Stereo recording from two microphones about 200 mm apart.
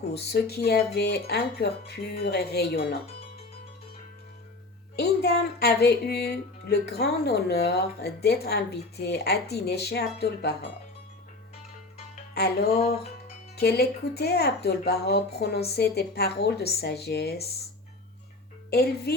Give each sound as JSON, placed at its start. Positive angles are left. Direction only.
{"t": 0.1, "sound": "speech", "side_deg": 55}
{"t": 4.9, "sound": "speech", "side_deg": 50}
{"t": 12.3, "sound": "music", "side_deg": 55}
{"t": 13.6, "sound": "speech", "side_deg": 55}
{"t": 18.7, "sound": "speech", "side_deg": 50}